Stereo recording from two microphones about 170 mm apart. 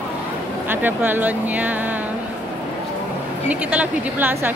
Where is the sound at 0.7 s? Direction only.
10° right (ahead or behind).